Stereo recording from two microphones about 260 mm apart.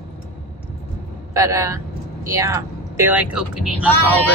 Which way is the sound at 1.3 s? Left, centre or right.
Centre.